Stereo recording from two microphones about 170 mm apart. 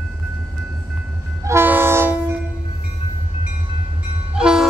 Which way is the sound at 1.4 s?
15° right (ahead or behind).